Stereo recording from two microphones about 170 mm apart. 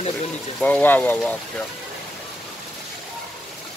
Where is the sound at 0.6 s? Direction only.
10° left (ahead or behind).